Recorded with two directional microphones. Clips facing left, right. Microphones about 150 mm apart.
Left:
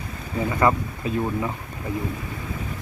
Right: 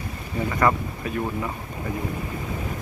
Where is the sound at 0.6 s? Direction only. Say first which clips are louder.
Left 1 dB; 20° left (ahead or behind).